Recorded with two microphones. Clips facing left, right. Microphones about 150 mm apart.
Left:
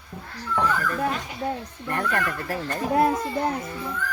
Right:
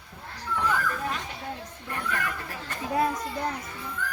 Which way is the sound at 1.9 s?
60° left (ahead or behind).